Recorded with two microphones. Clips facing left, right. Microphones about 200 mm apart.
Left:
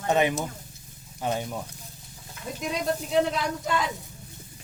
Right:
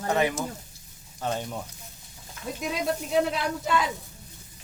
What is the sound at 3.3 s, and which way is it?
Speech, 5° right (ahead or behind).